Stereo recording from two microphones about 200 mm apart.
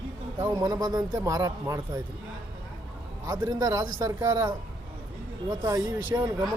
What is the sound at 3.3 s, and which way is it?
A man's voice, 20° right (ahead or behind).